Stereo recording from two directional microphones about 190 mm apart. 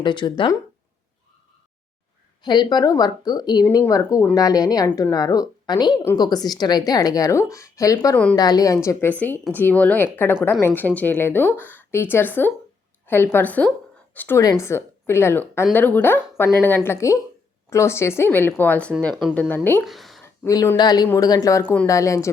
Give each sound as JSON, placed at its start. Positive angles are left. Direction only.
{"t": 0.0, "sound": "a woman's voice", "side_deg": 25}
{"t": 2.4, "sound": "a woman's voice", "side_deg": 20}
{"t": 8.4, "sound": "a woman's voice", "side_deg": 20}
{"t": 19.8, "sound": "a sound", "side_deg": 0}
{"t": 20.2, "sound": "a woman's voice", "side_deg": 15}